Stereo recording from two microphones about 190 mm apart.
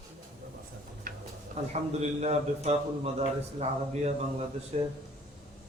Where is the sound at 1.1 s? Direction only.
45° right (ahead or behind).